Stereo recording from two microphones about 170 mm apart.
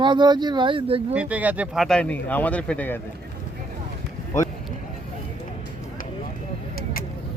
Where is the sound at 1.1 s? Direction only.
10° right (ahead or behind).